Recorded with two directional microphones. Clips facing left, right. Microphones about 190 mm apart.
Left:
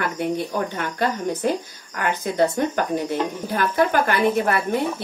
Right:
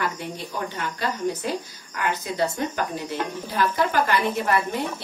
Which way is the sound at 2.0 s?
50° left (ahead or behind).